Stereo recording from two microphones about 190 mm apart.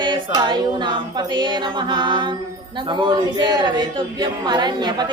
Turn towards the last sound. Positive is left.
turn(degrees=-20)  # may be behind; listen again after turning